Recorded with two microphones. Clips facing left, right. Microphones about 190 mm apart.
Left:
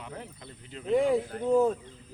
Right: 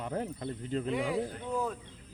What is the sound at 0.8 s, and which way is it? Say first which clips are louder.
Speech: left 10 dB; 45° left (ahead or behind).